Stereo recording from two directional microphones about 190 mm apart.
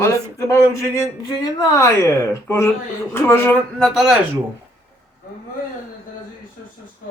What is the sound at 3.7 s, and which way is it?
Speech, centre (ahead or behind).